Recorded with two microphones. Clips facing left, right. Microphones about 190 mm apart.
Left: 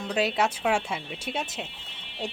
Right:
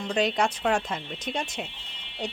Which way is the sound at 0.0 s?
5° left (ahead or behind).